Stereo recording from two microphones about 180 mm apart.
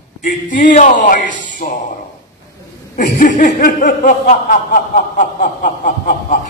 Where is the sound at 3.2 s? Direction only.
50° left (ahead or behind).